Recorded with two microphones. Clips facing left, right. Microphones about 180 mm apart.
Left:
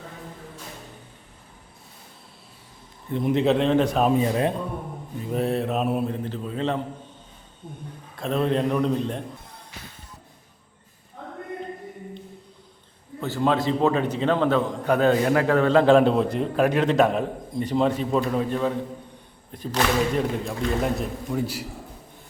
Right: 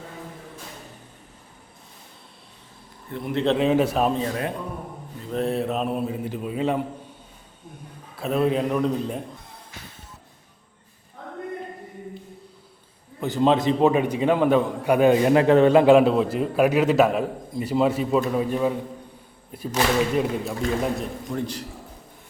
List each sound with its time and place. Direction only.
3.1 s a man's voice: 20° left (ahead or behind)
3.4 s a man's voice: centre (ahead or behind)
4.1 s a man's voice: 15° left (ahead or behind); by 6.8 s 10° right (ahead or behind)
8.1 s a man's voice: 5° right (ahead or behind)
13.1 s a man's voice: 15° right (ahead or behind); by 21.7 s 5° left (ahead or behind)